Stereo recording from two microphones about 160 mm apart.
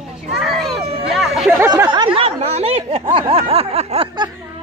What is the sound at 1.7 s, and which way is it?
Speech, 25° right (ahead or behind).